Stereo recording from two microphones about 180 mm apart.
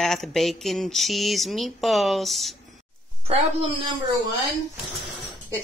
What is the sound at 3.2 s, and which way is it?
Speech, 35° right (ahead or behind).